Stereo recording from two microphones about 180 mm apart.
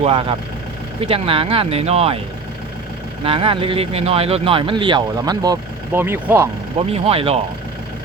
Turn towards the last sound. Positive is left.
turn(degrees=-35)  # may be behind; listen again after turning